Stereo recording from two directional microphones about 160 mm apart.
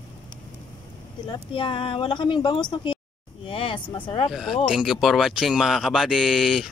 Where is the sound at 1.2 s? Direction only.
30° left (ahead or behind).